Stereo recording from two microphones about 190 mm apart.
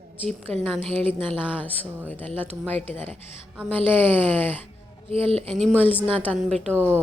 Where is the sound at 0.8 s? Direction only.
30° right (ahead or behind).